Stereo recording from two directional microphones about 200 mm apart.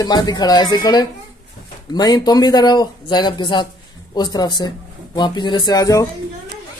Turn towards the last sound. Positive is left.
turn(degrees=15)  # may be behind; listen again after turning